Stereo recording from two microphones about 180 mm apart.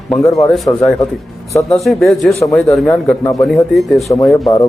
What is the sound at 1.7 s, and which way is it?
Speech, centre (ahead or behind).